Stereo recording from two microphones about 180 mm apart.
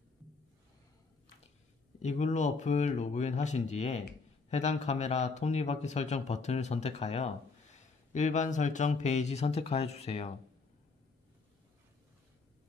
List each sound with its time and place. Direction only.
2.0 s speech: 40° left (ahead or behind)